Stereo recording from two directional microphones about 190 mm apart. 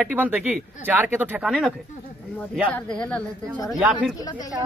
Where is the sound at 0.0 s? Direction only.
10° right (ahead or behind).